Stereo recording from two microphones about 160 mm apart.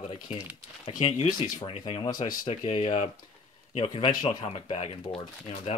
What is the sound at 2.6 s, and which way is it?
Speech, 30° left (ahead or behind).